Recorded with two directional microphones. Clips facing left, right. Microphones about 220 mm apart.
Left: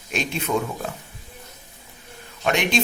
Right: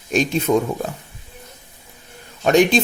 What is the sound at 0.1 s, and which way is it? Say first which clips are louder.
Speech: right 8 dB; 40° right (ahead or behind).